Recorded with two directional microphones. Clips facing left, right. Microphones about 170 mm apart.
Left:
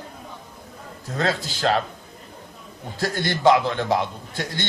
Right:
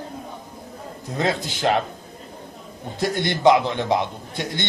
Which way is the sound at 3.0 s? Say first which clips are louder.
Right 2 dB; 20° right (ahead or behind).